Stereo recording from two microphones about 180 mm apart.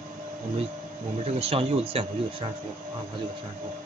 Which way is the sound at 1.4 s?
30° right (ahead or behind).